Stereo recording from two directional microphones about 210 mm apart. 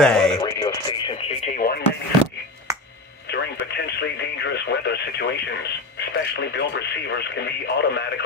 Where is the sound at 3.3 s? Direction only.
55° left (ahead or behind).